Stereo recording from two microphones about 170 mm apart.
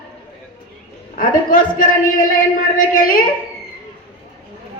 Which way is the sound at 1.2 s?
55° left (ahead or behind).